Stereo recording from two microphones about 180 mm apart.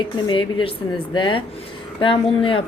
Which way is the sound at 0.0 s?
25° left (ahead or behind).